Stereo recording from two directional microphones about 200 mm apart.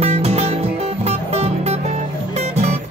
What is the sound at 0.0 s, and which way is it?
Music, 30° right (ahead or behind).